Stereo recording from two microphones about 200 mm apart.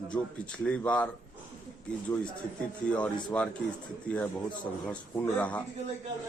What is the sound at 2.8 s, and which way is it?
Speech, 5° left (ahead or behind).